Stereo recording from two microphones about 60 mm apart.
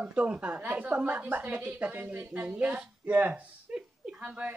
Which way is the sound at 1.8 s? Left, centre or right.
Centre.